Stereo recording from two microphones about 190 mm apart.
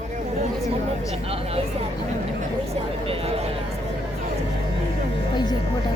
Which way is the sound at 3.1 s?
30° right (ahead or behind).